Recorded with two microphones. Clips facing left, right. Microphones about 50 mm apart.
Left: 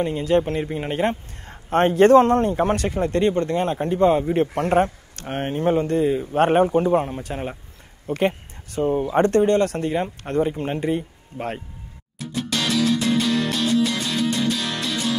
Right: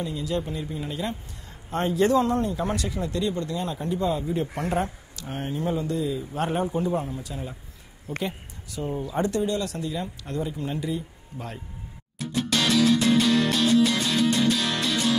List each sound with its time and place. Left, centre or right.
0.0 s speech: left
12.2 s music: centre